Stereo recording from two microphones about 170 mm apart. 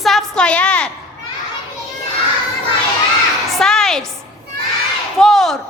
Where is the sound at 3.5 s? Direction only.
Centre (ahead or behind).